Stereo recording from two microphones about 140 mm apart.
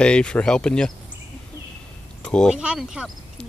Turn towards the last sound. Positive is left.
turn(degrees=-5)  # may be behind; listen again after turning